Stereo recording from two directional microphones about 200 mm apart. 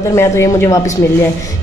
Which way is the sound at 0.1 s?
15° left (ahead or behind).